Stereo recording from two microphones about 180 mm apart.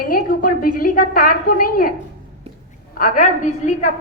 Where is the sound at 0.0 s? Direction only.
50° left (ahead or behind).